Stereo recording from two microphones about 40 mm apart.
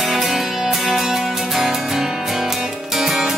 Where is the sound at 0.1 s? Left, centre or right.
Centre.